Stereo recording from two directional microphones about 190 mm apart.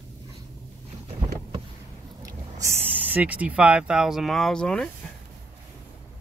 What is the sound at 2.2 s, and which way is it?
Speech, 10° right (ahead or behind).